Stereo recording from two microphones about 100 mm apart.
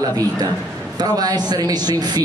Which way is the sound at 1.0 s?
40° right (ahead or behind).